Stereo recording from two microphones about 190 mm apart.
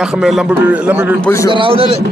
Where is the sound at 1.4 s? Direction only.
25° right (ahead or behind).